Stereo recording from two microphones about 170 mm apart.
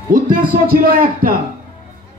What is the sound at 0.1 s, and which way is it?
A man's voice, 55° right (ahead or behind).